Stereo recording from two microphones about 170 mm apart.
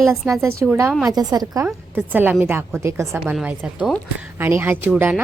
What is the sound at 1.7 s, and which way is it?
A woman's voice, 10° right (ahead or behind).